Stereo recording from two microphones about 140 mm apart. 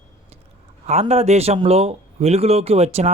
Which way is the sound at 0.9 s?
50° right (ahead or behind).